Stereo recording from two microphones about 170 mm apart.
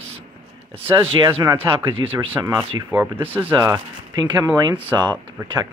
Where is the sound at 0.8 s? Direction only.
25° right (ahead or behind).